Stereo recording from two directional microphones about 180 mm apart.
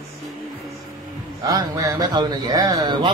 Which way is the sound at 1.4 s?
20° right (ahead or behind).